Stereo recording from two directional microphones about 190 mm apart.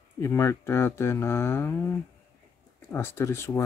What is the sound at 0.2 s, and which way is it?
Speech, 15° left (ahead or behind).